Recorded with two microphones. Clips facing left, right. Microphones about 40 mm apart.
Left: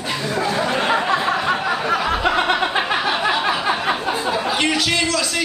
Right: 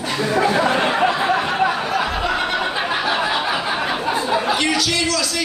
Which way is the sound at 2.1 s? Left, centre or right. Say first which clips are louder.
Left 3 dB; left.